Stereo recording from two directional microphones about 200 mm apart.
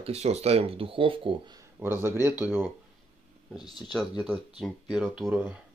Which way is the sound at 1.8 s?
10° right (ahead or behind).